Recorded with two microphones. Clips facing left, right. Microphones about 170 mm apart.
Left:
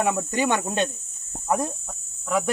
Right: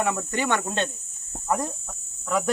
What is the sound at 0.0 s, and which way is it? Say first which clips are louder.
Speech: left 3 dB; 15° left (ahead or behind).